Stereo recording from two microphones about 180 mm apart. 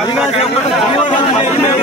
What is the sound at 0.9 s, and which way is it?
Speech, 30° left (ahead or behind).